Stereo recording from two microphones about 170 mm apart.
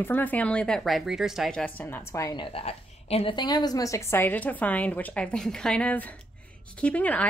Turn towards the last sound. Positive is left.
turn(degrees=10)  # may be behind; listen again after turning